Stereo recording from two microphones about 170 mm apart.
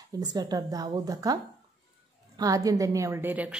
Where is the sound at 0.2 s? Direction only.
25° right (ahead or behind).